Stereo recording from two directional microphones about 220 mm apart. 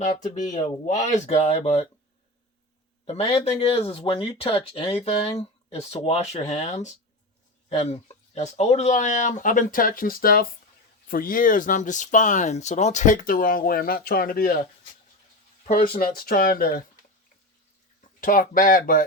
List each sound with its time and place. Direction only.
0.0 s speech: 35° left (ahead or behind)
3.1 s speech: 30° left (ahead or behind)
18.2 s speech: 40° left (ahead or behind)